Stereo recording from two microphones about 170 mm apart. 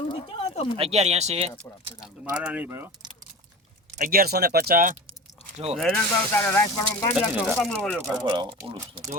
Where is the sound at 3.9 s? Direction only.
55° right (ahead or behind).